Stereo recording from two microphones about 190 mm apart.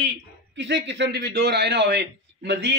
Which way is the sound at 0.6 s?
70° right (ahead or behind).